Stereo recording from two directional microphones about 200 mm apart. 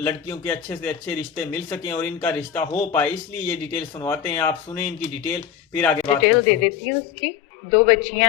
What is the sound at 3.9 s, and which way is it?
Speech, 15° left (ahead or behind).